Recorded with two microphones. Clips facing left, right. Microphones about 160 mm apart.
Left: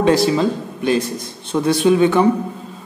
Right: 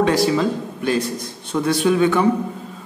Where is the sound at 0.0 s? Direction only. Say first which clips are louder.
Left 2 dB; 25° left (ahead or behind).